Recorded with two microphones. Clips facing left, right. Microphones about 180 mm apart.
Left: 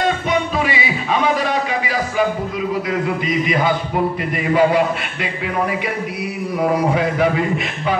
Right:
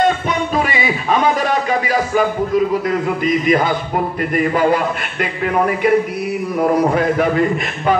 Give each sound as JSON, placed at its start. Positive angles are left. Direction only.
{"t": 0.7, "sound": "music", "side_deg": -45}
{"t": 3.3, "sound": "a man's voice", "side_deg": -45}
{"t": 6.9, "sound": "a man's voice", "side_deg": -50}